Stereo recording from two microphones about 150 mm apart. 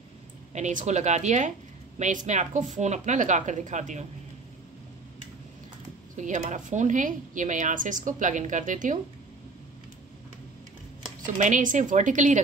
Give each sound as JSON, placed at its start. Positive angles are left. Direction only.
{"t": 0.5, "sound": "a woman's voice", "side_deg": -50}
{"t": 6.1, "sound": "a woman's voice", "side_deg": -55}
{"t": 11.3, "sound": "a woman's voice", "side_deg": -55}